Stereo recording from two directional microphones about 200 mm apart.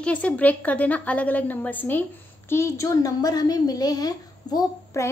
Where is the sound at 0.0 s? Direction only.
5° left (ahead or behind).